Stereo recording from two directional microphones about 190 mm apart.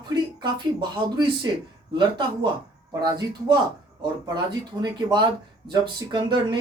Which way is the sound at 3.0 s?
20° right (ahead or behind).